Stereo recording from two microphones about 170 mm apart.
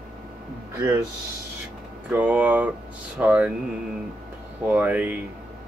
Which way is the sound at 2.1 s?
10° right (ahead or behind).